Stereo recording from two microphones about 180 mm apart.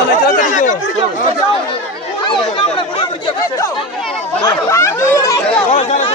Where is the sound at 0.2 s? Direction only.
45° left (ahead or behind).